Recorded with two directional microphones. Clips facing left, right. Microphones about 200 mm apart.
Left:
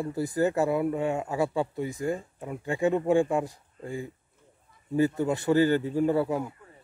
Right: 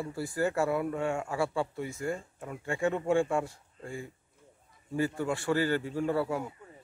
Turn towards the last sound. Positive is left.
turn(degrees=20)  # may be behind; listen again after turning